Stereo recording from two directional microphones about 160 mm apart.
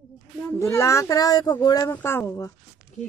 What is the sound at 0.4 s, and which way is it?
Speech, 15° left (ahead or behind).